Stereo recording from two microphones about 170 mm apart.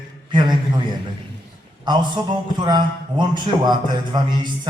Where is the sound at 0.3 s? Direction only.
25° right (ahead or behind).